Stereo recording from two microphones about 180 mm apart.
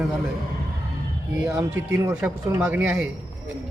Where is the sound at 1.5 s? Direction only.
15° right (ahead or behind).